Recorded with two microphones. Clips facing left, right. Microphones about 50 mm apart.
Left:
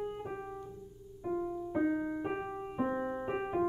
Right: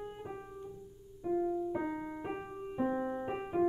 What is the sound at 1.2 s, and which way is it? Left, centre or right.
Music, left.